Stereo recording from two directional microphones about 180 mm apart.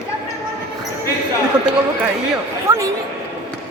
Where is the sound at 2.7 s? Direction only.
15° right (ahead or behind).